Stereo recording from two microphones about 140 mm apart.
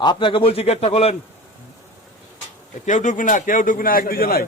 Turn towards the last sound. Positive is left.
turn(degrees=90)